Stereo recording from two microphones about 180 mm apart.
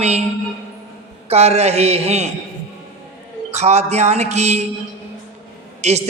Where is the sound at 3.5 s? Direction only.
40° right (ahead or behind).